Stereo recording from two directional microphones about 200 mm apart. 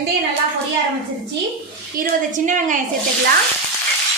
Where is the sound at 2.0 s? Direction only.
40° right (ahead or behind).